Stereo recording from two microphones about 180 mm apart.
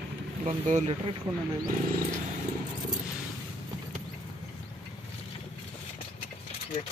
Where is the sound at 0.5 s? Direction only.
40° right (ahead or behind).